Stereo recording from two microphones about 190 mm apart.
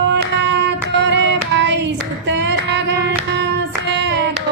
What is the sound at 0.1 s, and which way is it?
Music, 60° right (ahead or behind).